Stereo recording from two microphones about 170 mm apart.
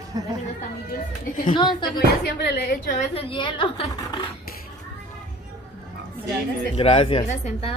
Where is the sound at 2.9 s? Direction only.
40° left (ahead or behind).